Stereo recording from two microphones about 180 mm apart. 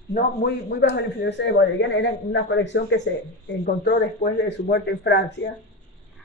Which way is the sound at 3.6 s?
65° left (ahead or behind).